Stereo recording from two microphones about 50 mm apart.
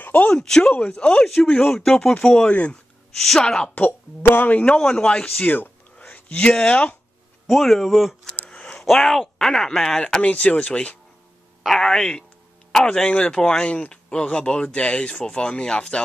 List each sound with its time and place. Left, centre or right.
0.0 s a sound: left
0.3 s speech: centre
1.2 s speech: centre
3.7 s speech: left
4.7 s speech: centre
5.9 s a sound: left
6.4 s speech: centre
6.7 s speech: left
7.4 s speech: centre
8.5 s a sound: left
8.8 s speech: centre
10.2 s speech: left
11.6 s speech: centre